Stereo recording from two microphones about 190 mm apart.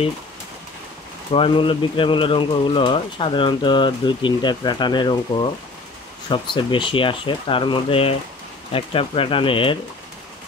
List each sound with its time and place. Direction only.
1.3 s speech: 25° left (ahead or behind)